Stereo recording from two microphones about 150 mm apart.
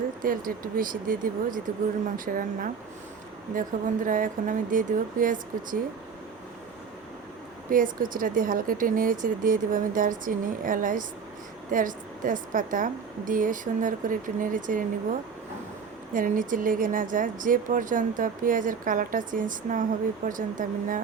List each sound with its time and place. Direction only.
0.2 s speech: 65° right (ahead or behind)
7.7 s speech: 65° right (ahead or behind)
16.1 s speech: 65° right (ahead or behind)